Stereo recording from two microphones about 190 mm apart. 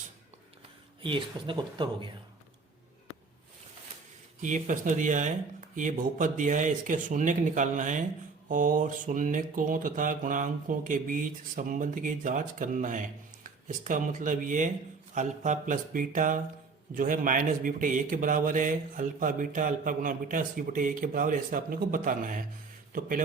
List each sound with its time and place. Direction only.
1.0 s speech: 25° right (ahead or behind)
4.4 s speech: 40° right (ahead or behind)
8.4 s a sound: 45° right (ahead or behind)
22.9 s a man's voice: 45° right (ahead or behind)